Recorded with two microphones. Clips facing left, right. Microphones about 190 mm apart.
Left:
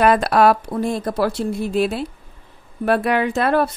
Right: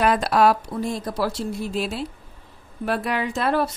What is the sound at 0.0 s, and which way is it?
Speech, 60° left (ahead or behind).